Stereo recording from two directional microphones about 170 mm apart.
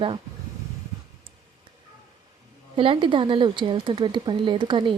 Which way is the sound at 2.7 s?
30° right (ahead or behind).